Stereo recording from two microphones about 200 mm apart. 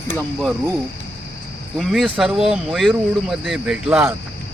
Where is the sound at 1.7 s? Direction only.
Centre (ahead or behind).